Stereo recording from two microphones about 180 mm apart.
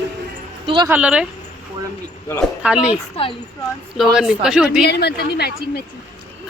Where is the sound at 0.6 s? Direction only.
30° right (ahead or behind).